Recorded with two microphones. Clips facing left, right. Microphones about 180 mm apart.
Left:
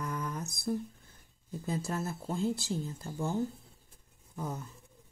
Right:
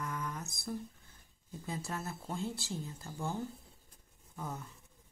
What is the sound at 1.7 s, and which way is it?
Speech, 40° left (ahead or behind).